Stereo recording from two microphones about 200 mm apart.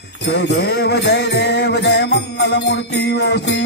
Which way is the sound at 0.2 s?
55° left (ahead or behind).